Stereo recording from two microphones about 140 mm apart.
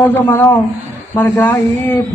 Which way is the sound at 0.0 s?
15° left (ahead or behind).